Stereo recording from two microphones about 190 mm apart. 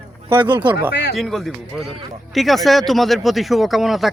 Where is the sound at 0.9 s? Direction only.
65° left (ahead or behind).